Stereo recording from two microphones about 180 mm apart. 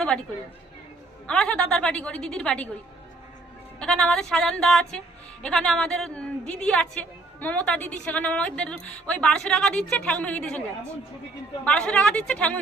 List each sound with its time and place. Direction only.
0.1 s a woman's voice: 5° left (ahead or behind)
1.3 s a woman's voice: 5° left (ahead or behind)
3.8 s a woman's voice: 5° left (ahead or behind)
11.6 s a woman's voice: 5° left (ahead or behind)